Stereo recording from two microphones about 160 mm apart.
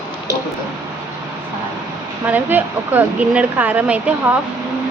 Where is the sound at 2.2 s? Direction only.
10° right (ahead or behind).